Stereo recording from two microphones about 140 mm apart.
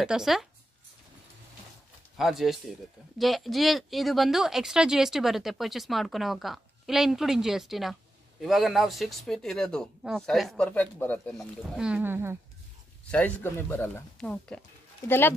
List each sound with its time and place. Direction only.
0.0 s speech: 5° right (ahead or behind)
2.1 s speech: centre (ahead or behind)
11.3 s speech: 5° right (ahead or behind)
13.1 s speech: 15° left (ahead or behind)